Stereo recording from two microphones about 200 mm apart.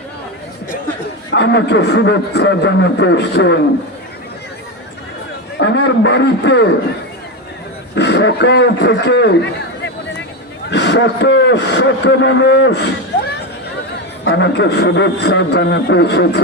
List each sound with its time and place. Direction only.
1.3 s a man's voice: 60° left (ahead or behind)
5.5 s a man's voice: 65° left (ahead or behind)
7.9 s a man's voice: 60° left (ahead or behind)
10.7 s a man's voice: 60° left (ahead or behind)
14.3 s a man's voice: 60° left (ahead or behind)